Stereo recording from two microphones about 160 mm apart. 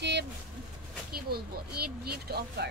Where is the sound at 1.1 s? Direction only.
75° right (ahead or behind).